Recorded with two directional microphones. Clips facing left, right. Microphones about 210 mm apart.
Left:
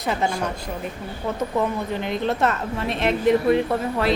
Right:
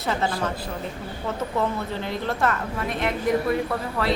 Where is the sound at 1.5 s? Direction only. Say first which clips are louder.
Left 2 dB; 15° left (ahead or behind).